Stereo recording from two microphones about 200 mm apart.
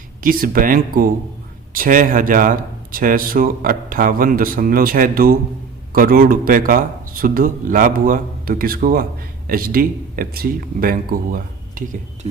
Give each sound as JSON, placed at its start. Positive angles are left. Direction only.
{"t": 0.2, "sound": "speech", "side_deg": -45}